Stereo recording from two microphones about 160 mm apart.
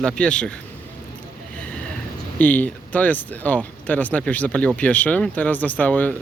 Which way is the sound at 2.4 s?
10° left (ahead or behind).